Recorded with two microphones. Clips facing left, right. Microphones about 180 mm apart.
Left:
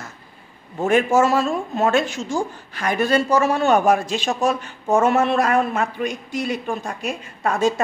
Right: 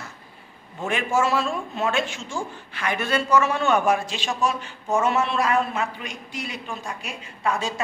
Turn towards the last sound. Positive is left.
turn(degrees=45)  # may be behind; listen again after turning